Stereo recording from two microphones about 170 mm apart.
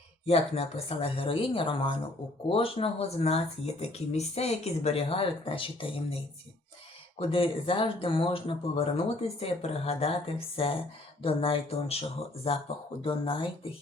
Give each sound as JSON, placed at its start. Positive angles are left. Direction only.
{"t": 0.3, "sound": "speech", "side_deg": 35}
{"t": 7.2, "sound": "speech", "side_deg": 35}